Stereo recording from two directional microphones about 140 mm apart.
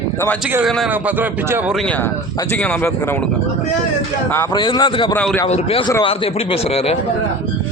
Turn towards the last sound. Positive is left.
turn(degrees=45)  # may be behind; listen again after turning